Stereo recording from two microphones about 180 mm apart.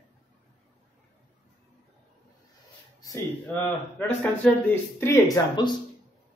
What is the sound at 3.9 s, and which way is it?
Speech, 5° left (ahead or behind).